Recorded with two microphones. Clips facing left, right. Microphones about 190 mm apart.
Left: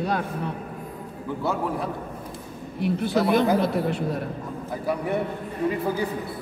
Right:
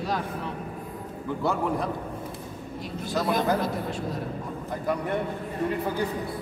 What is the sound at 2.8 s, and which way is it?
A man's voice, 65° left (ahead or behind).